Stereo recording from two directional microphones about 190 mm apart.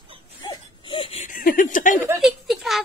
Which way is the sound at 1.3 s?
45° left (ahead or behind).